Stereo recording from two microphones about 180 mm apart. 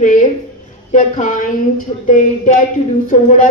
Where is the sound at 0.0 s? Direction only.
45° left (ahead or behind).